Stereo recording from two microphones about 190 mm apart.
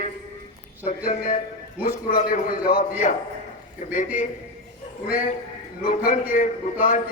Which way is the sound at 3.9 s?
40° left (ahead or behind).